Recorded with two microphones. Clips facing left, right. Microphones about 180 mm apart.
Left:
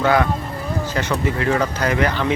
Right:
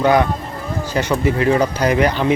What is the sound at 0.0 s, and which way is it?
Speech, 20° right (ahead or behind).